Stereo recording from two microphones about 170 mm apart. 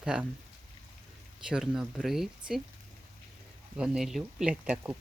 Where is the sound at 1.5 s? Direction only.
5° right (ahead or behind).